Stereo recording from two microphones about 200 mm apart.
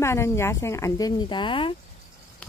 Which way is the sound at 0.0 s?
15° left (ahead or behind).